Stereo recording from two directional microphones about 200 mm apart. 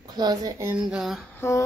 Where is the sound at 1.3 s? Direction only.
15° left (ahead or behind).